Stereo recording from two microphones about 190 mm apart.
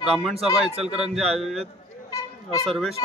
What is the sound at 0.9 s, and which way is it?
A man's voice, 5° right (ahead or behind).